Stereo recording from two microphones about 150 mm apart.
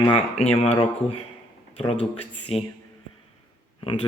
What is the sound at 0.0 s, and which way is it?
Speech, 35° left (ahead or behind).